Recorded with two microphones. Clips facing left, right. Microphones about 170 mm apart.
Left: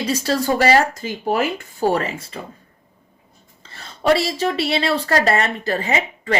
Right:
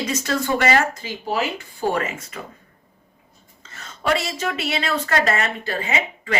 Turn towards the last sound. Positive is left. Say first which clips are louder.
# left 3 dB
turn(degrees=35)  # may be behind; listen again after turning